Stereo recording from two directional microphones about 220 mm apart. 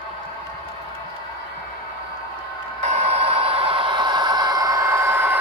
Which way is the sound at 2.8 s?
30° right (ahead or behind).